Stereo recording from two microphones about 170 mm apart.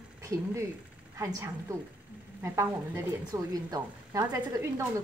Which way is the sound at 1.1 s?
15° right (ahead or behind).